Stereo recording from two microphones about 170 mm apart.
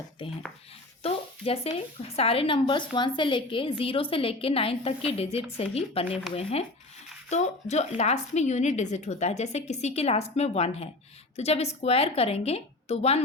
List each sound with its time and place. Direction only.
1.0 s a woman's voice: 35° left (ahead or behind)